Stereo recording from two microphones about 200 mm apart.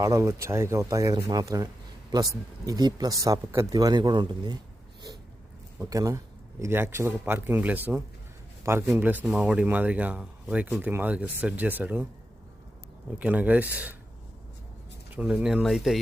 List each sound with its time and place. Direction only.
0.0 s speech: 15° right (ahead or behind)
5.8 s speech: 15° right (ahead or behind)
13.1 s speech: 5° right (ahead or behind)
15.1 s speech: 5° right (ahead or behind)